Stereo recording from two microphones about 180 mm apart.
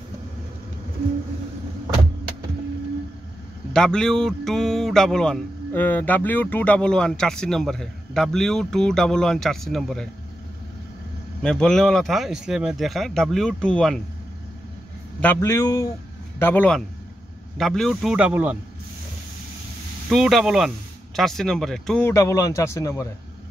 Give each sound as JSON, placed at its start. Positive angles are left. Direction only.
{"t": 3.7, "sound": "speech", "side_deg": 5}
{"t": 11.4, "sound": "speech", "side_deg": 5}
{"t": 15.1, "sound": "speech", "side_deg": 10}
{"t": 20.1, "sound": "speech", "side_deg": 0}
{"t": 22.1, "sound": "speech", "side_deg": 15}